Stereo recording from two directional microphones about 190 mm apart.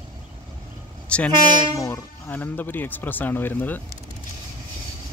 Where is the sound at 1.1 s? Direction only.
5° left (ahead or behind).